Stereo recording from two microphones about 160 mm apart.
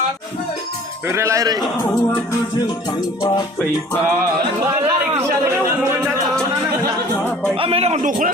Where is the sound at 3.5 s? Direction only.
15° left (ahead or behind).